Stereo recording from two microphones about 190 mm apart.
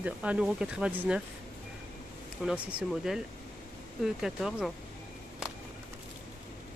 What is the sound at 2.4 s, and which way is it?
Speech, 5° right (ahead or behind).